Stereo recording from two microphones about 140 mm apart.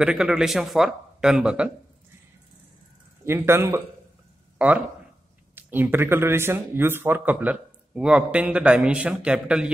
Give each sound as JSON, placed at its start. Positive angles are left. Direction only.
{"t": 0.0, "sound": "speech", "side_deg": -5}
{"t": 3.3, "sound": "speech", "side_deg": -20}